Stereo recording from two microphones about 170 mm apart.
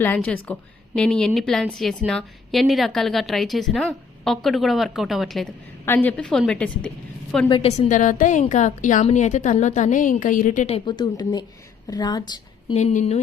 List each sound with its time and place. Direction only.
0.0 s a woman's voice: 10° left (ahead or behind)
5.8 s a woman's voice: 10° left (ahead or behind)
7.4 s a woman's voice: 30° left (ahead or behind)
12.7 s a woman's voice: 45° left (ahead or behind)